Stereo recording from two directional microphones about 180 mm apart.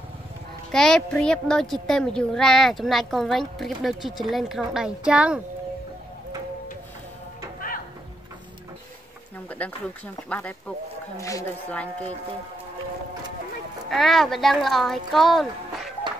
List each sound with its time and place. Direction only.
0.7 s a child's voice: centre (ahead or behind)
9.6 s speech: 10° left (ahead or behind)
11.1 s speech: 15° left (ahead or behind)
13.8 s a child's voice: centre (ahead or behind)